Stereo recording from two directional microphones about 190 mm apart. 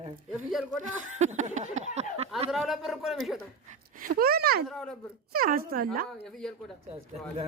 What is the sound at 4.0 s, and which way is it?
Speech, 50° right (ahead or behind).